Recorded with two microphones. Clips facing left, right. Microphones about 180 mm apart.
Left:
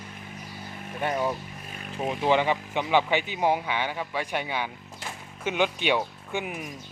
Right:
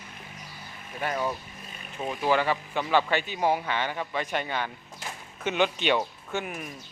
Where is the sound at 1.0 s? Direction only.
20° left (ahead or behind).